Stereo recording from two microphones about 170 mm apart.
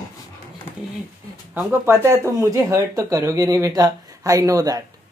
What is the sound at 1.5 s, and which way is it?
Speech, 10° right (ahead or behind).